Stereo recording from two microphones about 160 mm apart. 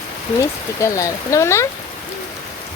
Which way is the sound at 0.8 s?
20° left (ahead or behind).